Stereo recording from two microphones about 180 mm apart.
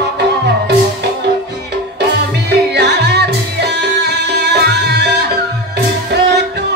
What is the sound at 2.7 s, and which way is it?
Music, 65° right (ahead or behind).